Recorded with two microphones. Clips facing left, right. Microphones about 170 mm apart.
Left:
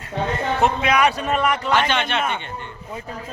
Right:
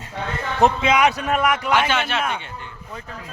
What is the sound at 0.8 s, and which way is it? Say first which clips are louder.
Speech: right 1 dB; 20° right (ahead or behind).